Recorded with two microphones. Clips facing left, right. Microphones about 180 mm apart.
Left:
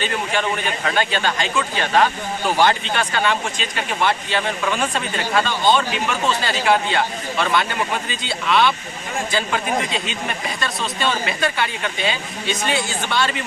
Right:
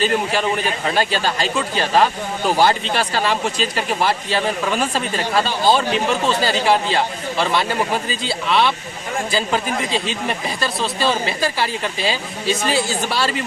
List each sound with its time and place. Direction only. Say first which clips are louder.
0.0 s speech: right 4 dB; 35° right (ahead or behind)